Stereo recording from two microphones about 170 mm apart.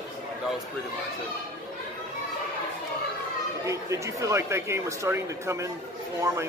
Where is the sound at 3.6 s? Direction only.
20° right (ahead or behind).